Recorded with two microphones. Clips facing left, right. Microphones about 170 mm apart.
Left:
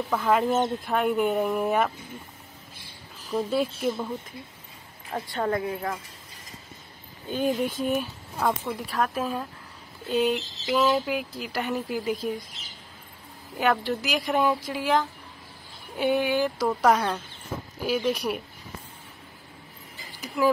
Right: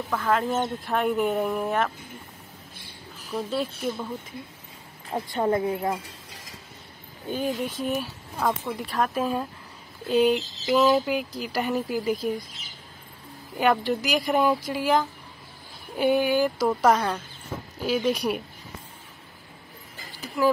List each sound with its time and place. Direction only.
0.1 s speech: 5° left (ahead or behind)
3.3 s speech: 10° left (ahead or behind)
5.1 s a woman's voice: 20° right (ahead or behind)
7.8 s speech: centre (ahead or behind)
13.6 s speech: centre (ahead or behind)
20.4 s speech: centre (ahead or behind)